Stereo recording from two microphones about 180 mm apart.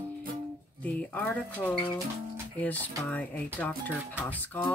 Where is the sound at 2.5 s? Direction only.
10° left (ahead or behind).